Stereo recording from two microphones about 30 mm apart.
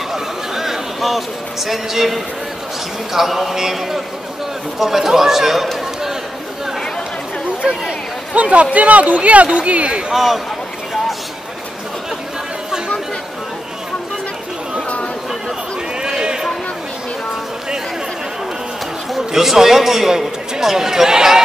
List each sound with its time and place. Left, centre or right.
0.1 s a sound: centre
1.7 s a man's voice: centre
7.6 s a man's voice: centre
8.4 s a man's voice: right
10.1 s speech: centre
16.0 s a sound: right
19.1 s a man's voice: centre
20.1 s a sound: right
20.6 s a man's voice: centre